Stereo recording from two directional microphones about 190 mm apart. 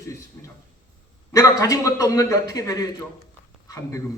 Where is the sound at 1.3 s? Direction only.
15° left (ahead or behind).